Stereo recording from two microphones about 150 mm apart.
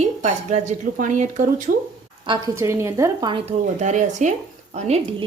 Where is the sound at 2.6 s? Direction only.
20° right (ahead or behind).